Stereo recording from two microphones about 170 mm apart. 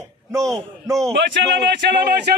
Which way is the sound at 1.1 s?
90° right.